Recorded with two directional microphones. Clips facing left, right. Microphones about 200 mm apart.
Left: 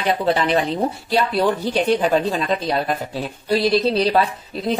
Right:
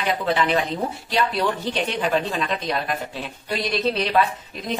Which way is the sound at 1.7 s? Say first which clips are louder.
Left 6 dB; 40° left (ahead or behind).